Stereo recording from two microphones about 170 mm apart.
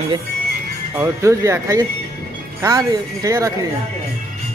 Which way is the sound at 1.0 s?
15° right (ahead or behind).